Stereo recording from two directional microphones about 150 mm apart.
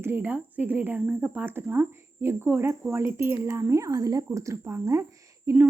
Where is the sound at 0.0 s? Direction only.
10° right (ahead or behind).